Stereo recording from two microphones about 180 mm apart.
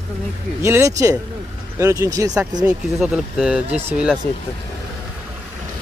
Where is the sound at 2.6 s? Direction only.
5° right (ahead or behind).